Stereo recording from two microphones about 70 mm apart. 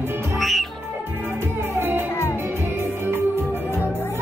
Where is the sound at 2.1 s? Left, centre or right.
Left.